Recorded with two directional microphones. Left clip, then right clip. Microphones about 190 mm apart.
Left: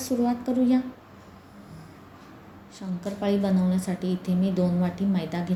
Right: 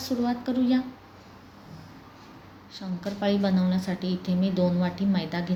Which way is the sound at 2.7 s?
5° left (ahead or behind).